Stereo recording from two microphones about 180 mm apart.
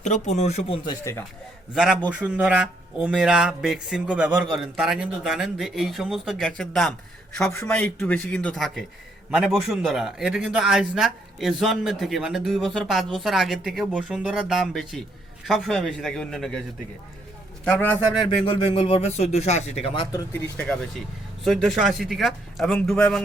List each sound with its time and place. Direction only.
0.0 s speech: 40° left (ahead or behind)
0.9 s a man's voice: 15° left (ahead or behind)
1.7 s a man's voice: centre (ahead or behind)
17.7 s a man's voice: 10° left (ahead or behind)
18.4 s speech: 30° left (ahead or behind)
21.4 s a man's voice: centre (ahead or behind)